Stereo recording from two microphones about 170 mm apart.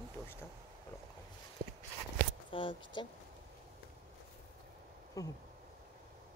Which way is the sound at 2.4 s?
30° left (ahead or behind).